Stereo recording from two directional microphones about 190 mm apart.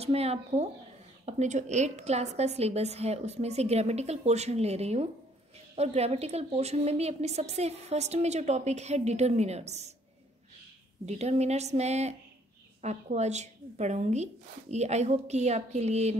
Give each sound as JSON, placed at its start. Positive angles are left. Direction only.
{"t": 0.0, "sound": "a woman's voice", "side_deg": -35}
{"t": 11.1, "sound": "a woman's voice", "side_deg": -35}